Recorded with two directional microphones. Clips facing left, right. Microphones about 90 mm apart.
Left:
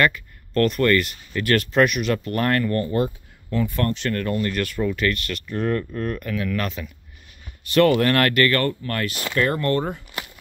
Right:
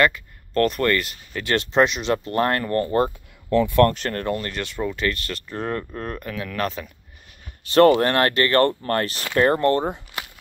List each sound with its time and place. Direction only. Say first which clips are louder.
0.0 s speech: right 1 dB; 30° right (ahead or behind)
3.4 s speech: right 7 dB; 75° right (ahead or behind)
3.9 s speech: left 1 dB; 35° right (ahead or behind); by 10.0 s 20° right (ahead or behind)